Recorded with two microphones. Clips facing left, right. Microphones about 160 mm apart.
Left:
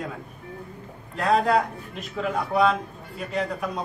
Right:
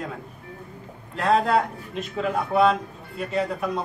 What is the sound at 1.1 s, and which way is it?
A man's voice, centre (ahead or behind).